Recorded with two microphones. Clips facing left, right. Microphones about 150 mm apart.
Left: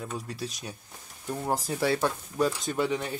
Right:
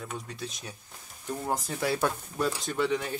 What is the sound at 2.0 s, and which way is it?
Speech, 10° left (ahead or behind).